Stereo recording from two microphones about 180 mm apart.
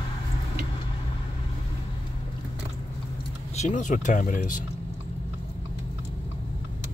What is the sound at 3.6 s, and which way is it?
Speech, 45° left (ahead or behind).